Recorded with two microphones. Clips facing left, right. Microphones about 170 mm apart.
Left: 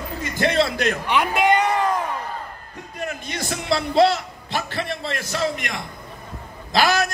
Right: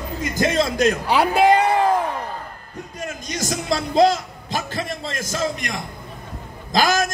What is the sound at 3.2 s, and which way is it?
A man's voice, 40° right (ahead or behind).